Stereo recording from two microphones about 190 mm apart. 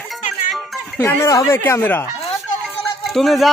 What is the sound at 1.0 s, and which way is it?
Speech, 10° left (ahead or behind).